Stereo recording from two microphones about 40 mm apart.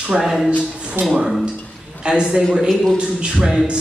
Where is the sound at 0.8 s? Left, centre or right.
Right.